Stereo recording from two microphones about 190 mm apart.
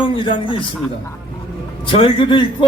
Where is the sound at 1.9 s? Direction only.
25° left (ahead or behind).